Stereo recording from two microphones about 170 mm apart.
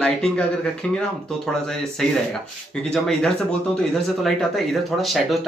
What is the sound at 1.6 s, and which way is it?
Speech, centre (ahead or behind).